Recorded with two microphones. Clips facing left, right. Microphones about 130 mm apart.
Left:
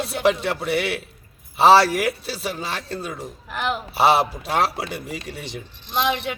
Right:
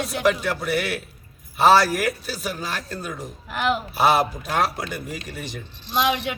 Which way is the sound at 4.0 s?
30° left (ahead or behind).